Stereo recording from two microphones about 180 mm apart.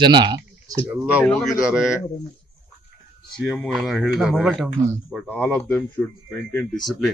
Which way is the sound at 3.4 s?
Centre (ahead or behind).